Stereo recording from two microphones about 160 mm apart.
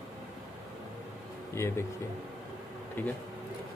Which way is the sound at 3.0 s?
10° left (ahead or behind).